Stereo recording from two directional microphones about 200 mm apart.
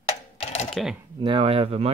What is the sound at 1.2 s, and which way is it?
Speech, 25° right (ahead or behind).